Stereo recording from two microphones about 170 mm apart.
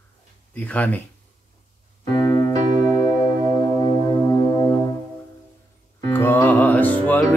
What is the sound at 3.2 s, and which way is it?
Music, 25° left (ahead or behind).